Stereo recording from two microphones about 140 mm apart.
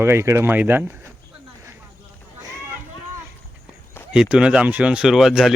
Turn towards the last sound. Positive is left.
turn(degrees=0)  # may be behind; listen again after turning